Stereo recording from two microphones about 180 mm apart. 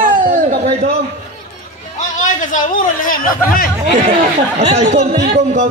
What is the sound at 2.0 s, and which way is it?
A man's voice, 45° left (ahead or behind).